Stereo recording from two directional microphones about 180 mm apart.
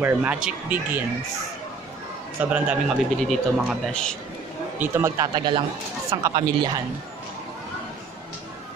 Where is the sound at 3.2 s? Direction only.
Centre (ahead or behind).